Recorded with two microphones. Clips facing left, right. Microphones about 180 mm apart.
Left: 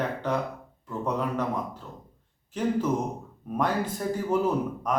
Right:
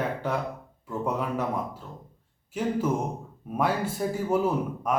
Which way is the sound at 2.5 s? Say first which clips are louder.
Left 1 dB; 10° right (ahead or behind).